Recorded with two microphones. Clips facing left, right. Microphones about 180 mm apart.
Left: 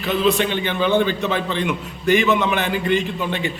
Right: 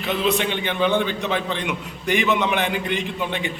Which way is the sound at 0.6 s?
15° right (ahead or behind).